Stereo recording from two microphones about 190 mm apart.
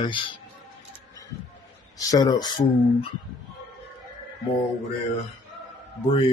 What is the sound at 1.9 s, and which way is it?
Speech, 20° left (ahead or behind).